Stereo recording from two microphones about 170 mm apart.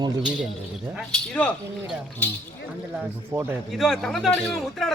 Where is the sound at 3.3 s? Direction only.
10° right (ahead or behind).